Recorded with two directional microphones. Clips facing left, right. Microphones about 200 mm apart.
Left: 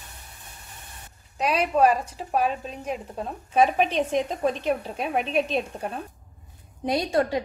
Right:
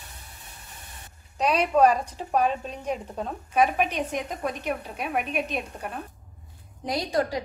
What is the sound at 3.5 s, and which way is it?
A woman's voice, 30° left (ahead or behind).